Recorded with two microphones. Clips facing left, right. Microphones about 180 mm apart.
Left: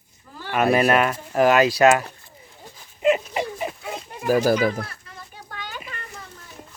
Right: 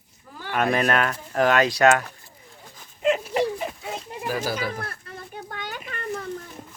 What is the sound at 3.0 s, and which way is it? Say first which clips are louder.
Dog: left 3 dB; 5° left (ahead or behind).